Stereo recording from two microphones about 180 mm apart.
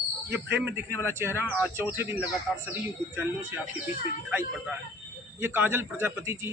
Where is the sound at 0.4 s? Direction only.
70° right (ahead or behind).